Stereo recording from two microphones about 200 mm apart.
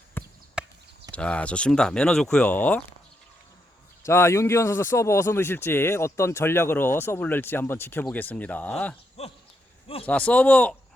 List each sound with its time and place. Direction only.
0.2 s a sound: 10° left (ahead or behind)
0.6 s chop: 5° right (ahead or behind)
1.1 s speech: 5° left (ahead or behind)
4.0 s speech: 15° left (ahead or behind)
9.2 s a sound: 30° left (ahead or behind)
10.1 s speech: 5° left (ahead or behind)